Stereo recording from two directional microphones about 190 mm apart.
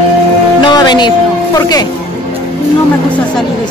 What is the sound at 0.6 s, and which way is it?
Speech, 25° left (ahead or behind).